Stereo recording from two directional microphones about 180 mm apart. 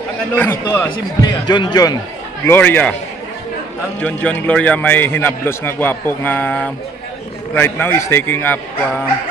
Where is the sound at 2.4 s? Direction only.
10° left (ahead or behind).